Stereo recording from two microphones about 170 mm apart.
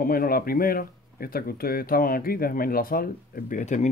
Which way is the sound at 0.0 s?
60° left (ahead or behind).